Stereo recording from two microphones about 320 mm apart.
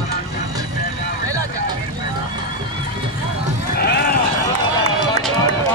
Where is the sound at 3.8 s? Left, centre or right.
Left.